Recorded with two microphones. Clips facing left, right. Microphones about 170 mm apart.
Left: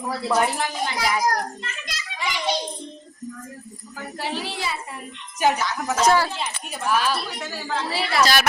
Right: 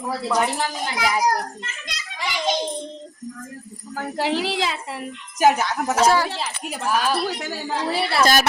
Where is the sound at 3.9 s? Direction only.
90° right.